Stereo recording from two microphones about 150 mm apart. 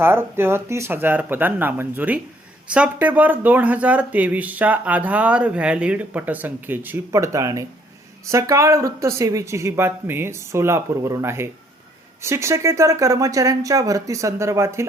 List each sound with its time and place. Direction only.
0.0 s speech: 15° right (ahead or behind)